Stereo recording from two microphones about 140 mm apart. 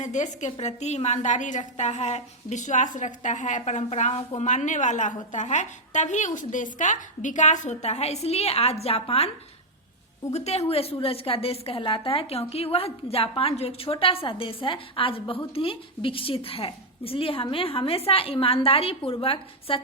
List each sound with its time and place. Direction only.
0.0 s a woman's voice: 60° left (ahead or behind)
10.3 s a woman's voice: 50° left (ahead or behind)